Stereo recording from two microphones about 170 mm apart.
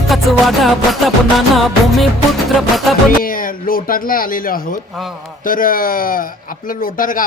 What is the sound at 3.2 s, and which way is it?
A man's voice, 55° left (ahead or behind).